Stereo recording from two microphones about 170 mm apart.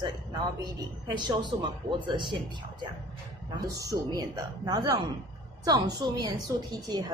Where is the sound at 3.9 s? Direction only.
20° right (ahead or behind).